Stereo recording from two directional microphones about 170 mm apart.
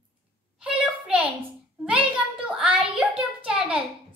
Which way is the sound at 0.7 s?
5° right (ahead or behind).